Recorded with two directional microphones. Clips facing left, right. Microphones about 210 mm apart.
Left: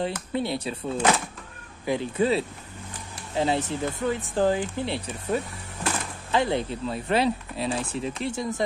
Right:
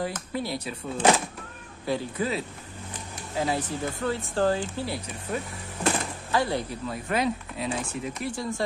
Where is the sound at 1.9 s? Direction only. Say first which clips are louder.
Left 4 dB; 25° left (ahead or behind).